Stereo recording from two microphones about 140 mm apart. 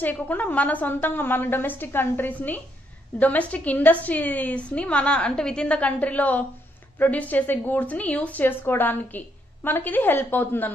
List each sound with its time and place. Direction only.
0.0 s a woman's voice: 10° left (ahead or behind)